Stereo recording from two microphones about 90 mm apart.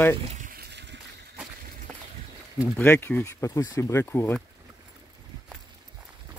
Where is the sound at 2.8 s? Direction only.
25° left (ahead or behind).